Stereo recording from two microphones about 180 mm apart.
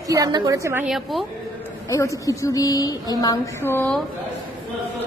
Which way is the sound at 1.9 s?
20° left (ahead or behind).